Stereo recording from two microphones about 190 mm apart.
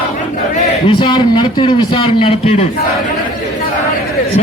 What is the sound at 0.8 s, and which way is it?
A man's voice, 25° left (ahead or behind).